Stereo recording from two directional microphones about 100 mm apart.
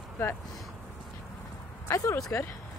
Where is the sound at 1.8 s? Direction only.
30° left (ahead or behind).